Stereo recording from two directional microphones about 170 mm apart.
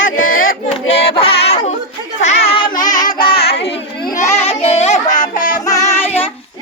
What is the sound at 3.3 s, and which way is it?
Child singing, 70° left (ahead or behind).